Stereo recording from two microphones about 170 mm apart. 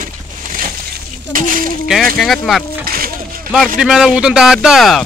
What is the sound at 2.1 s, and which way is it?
Speech, centre (ahead or behind).